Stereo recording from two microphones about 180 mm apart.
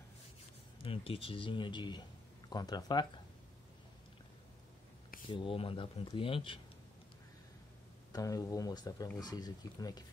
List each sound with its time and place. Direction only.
0.8 s speech: 30° left (ahead or behind)
5.3 s speech: 30° left (ahead or behind)
8.1 s speech: 20° left (ahead or behind)